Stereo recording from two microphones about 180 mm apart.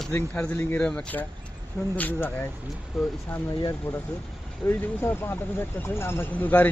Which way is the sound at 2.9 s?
Centre (ahead or behind).